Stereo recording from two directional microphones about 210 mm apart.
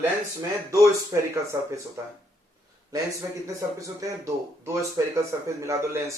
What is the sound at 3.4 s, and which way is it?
Speech, 15° right (ahead or behind).